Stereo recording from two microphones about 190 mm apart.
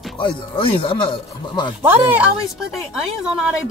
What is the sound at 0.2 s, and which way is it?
Speech, 25° left (ahead or behind).